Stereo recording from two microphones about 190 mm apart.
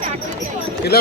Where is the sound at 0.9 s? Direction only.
55° left (ahead or behind).